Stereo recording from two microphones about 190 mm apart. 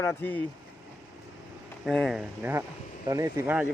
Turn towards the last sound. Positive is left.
turn(degrees=-10)  # may be behind; listen again after turning